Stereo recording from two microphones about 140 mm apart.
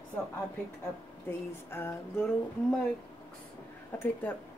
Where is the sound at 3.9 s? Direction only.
15° left (ahead or behind).